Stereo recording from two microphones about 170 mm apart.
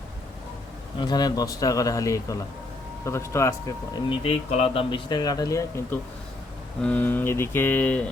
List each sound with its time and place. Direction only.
0.9 s speech: 25° left (ahead or behind)
3.0 s mantra: 15° left (ahead or behind)
4.1 s speech: 35° left (ahead or behind); by 6.0 s 15° left (ahead or behind)
6.8 s mantra: 10° left (ahead or behind)